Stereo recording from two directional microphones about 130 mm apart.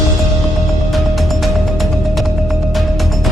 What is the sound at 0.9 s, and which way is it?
Music, centre (ahead or behind).